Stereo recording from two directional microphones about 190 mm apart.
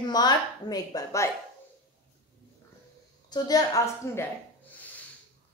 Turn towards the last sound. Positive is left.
turn(degrees=20)  # may be behind; listen again after turning